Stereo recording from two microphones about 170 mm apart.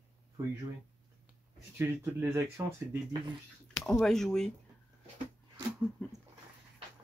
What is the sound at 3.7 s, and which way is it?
Speech, centre (ahead or behind).